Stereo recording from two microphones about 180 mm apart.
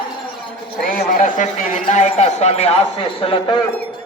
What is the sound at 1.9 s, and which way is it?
A man's voice, 40° left (ahead or behind).